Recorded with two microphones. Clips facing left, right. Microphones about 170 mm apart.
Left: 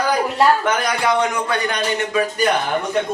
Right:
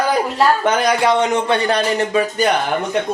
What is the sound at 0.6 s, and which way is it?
A man's voice, 25° right (ahead or behind).